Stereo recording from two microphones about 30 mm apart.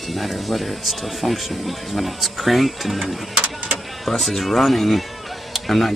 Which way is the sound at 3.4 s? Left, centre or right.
Right.